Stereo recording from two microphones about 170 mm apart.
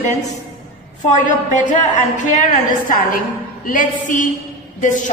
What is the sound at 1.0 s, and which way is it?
A woman's voice, 45° left (ahead or behind).